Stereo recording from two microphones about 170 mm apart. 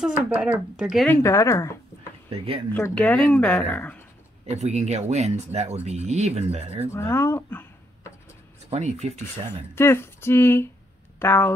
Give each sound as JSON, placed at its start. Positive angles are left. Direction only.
{"t": 0.0, "sound": "speech", "side_deg": -5}
{"t": 1.0, "sound": "speech", "side_deg": 15}
{"t": 2.2, "sound": "speech", "side_deg": -35}
{"t": 2.7, "sound": "speech", "side_deg": 10}
{"t": 4.5, "sound": "speech", "side_deg": -40}
{"t": 6.9, "sound": "a sound", "side_deg": 15}
{"t": 8.6, "sound": "speech", "side_deg": -40}
{"t": 9.5, "sound": "speech", "side_deg": 15}